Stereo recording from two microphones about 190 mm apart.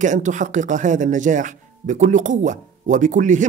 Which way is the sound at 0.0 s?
40° right (ahead or behind).